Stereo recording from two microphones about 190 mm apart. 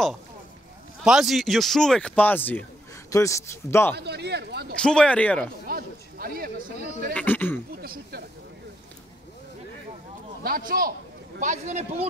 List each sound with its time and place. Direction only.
1.0 s a man's voice: centre (ahead or behind); by 3.9 s 15° left (ahead or behind)
3.9 s speech: 60° right (ahead or behind)
4.8 s a man's voice: 5° left (ahead or behind)
5.7 s a sound: 50° right (ahead or behind)
7.2 s a sound: 10° left (ahead or behind)
7.7 s speech: 55° right (ahead or behind)
10.4 s a man's voice: 50° right (ahead or behind)